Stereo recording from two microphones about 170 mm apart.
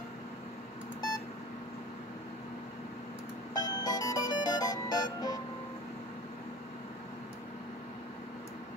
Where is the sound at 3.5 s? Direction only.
20° left (ahead or behind).